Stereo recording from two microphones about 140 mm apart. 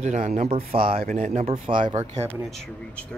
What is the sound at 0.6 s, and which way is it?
Speech, 90° right.